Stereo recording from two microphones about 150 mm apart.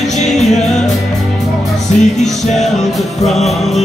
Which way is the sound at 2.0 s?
50° left (ahead or behind).